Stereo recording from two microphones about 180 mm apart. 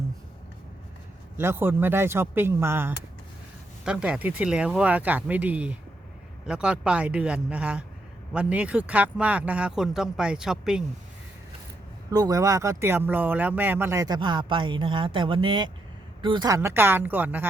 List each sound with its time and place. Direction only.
1.4 s speech: 15° right (ahead or behind)
12.1 s speech: 20° right (ahead or behind)
16.6 s speech: 10° right (ahead or behind)